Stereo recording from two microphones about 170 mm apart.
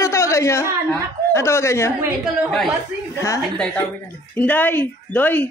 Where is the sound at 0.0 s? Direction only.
15° left (ahead or behind).